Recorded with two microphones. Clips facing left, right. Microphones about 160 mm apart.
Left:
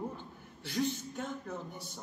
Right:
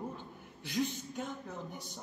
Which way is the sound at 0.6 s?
15° right (ahead or behind).